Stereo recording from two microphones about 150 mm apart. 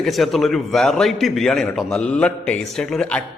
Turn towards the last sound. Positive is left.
turn(degrees=5)  # may be behind; listen again after turning